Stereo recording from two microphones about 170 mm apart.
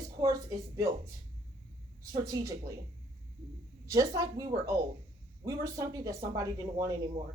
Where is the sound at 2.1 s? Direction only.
20° right (ahead or behind).